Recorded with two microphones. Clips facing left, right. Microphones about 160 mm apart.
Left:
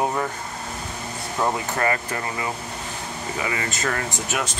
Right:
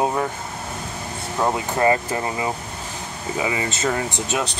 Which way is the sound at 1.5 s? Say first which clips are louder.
Right 5 dB; 20° right (ahead or behind).